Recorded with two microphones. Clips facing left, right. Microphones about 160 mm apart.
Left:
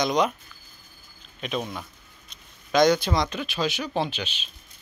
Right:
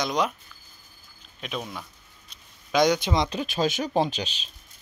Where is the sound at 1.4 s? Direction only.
Centre (ahead or behind); by 3.4 s 25° right (ahead or behind).